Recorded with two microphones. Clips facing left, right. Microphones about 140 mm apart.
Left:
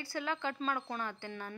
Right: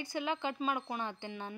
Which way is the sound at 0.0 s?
20° right (ahead or behind).